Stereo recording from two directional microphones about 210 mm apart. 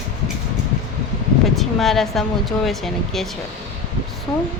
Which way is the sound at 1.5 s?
Centre (ahead or behind).